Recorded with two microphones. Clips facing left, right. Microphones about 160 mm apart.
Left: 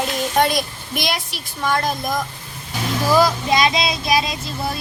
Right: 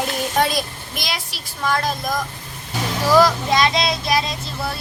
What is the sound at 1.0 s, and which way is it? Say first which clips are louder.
Speech: left 5 dB; 55° left (ahead or behind).